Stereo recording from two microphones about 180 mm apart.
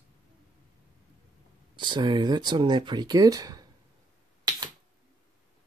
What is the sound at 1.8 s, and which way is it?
Speech, 25° right (ahead or behind).